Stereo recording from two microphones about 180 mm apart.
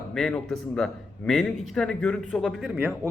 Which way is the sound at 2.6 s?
10° right (ahead or behind).